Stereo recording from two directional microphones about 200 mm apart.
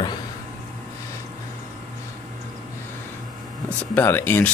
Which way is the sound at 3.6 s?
10° left (ahead or behind).